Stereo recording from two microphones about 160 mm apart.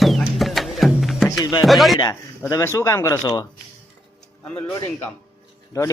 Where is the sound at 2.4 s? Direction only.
20° left (ahead or behind).